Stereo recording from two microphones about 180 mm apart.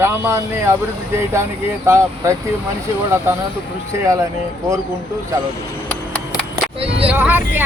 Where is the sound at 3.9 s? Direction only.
15° right (ahead or behind).